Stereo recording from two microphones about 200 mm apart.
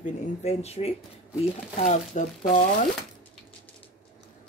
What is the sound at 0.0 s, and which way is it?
Speech, 35° left (ahead or behind).